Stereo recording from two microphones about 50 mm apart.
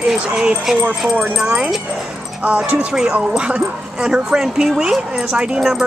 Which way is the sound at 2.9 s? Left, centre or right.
Centre.